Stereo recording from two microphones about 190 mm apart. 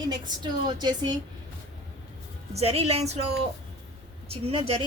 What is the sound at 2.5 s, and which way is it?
Speech, 30° right (ahead or behind).